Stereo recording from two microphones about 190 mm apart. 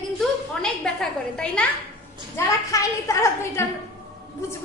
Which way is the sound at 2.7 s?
15° left (ahead or behind).